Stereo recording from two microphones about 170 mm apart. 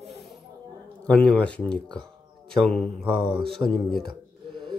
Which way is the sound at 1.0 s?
5° left (ahead or behind).